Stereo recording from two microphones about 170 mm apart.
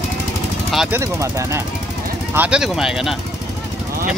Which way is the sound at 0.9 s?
15° right (ahead or behind).